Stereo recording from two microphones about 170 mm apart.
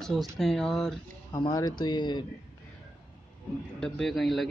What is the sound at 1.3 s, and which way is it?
Speech, 20° left (ahead or behind).